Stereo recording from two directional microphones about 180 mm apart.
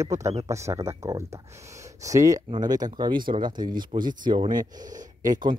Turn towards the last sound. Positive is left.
turn(degrees=-25)  # may be behind; listen again after turning